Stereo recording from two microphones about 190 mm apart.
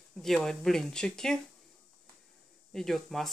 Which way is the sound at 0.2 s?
Centre (ahead or behind).